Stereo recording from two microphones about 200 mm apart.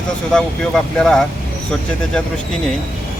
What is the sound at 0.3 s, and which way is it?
Speech, 5° left (ahead or behind).